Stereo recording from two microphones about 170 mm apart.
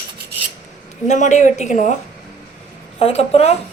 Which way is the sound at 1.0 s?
45° left (ahead or behind).